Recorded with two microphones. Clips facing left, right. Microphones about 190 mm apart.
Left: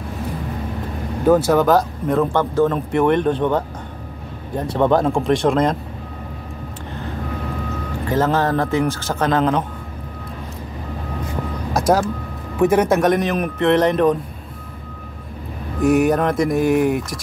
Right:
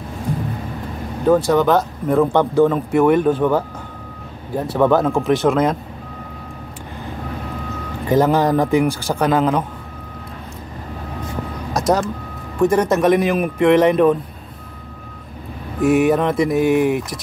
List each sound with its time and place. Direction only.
1.3 s speech: 5° left (ahead or behind)
2.3 s speech: 15° right (ahead or behind)
8.1 s speech: 15° right (ahead or behind)
11.7 s vehicle: 5° left (ahead or behind)
12.5 s speech: 5° left (ahead or behind)
15.8 s speech: 5° right (ahead or behind)